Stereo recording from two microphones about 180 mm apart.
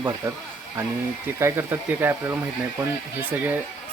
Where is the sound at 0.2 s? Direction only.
20° right (ahead or behind).